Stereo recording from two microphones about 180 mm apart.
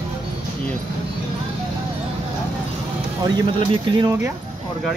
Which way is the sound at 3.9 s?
25° right (ahead or behind).